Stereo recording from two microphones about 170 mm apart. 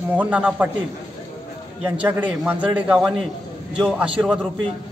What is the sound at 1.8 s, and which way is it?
A man's voice, 10° right (ahead or behind).